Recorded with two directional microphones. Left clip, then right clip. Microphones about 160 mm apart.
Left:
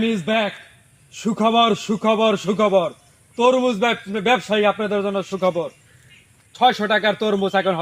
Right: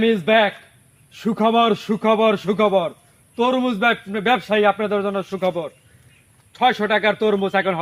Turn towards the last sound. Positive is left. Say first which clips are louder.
# even
turn(degrees=35)  # may be behind; listen again after turning